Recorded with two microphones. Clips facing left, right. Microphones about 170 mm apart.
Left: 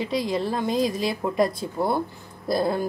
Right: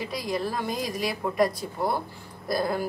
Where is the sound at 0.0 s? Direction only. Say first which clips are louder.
Left 4 dB; 25° left (ahead or behind).